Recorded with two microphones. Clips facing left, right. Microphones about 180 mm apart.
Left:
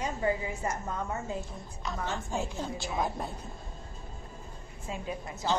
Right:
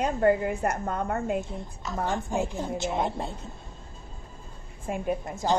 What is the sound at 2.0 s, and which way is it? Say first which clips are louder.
Speech: right 6 dB; 15° right (ahead or behind).